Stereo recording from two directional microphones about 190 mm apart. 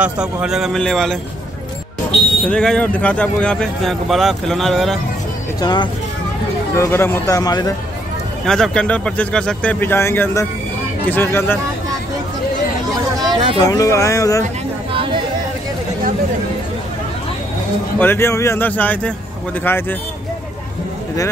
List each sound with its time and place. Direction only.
0.0 s speech: 5° right (ahead or behind)
2.4 s speech: 5° left (ahead or behind)
5.6 s speech: 20° left (ahead or behind)
8.5 s speech: 5° left (ahead or behind)
13.2 s a sound: 25° right (ahead or behind)
13.6 s speech: 20° left (ahead or behind)
14.9 s chatter: 25° right (ahead or behind)
17.9 s speech: 10° left (ahead or behind)